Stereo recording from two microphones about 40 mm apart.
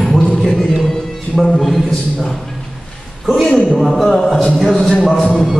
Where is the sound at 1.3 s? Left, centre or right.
Centre.